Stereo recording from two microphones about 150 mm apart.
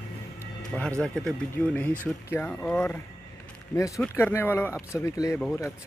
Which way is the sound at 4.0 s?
15° left (ahead or behind).